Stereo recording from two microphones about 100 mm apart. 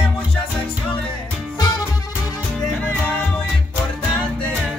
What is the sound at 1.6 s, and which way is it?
Music, 45° left (ahead or behind).